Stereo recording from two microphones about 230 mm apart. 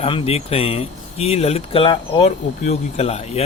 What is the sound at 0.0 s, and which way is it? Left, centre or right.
Speech, left.